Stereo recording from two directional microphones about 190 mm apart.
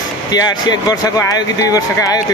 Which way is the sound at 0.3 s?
20° left (ahead or behind).